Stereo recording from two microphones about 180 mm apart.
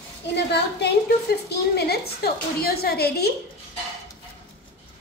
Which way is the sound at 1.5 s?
65° left (ahead or behind).